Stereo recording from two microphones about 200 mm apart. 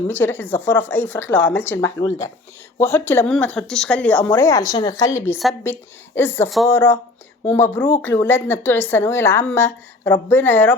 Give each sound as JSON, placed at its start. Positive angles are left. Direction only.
{"t": 0.1, "sound": "a woman's voice", "side_deg": 10}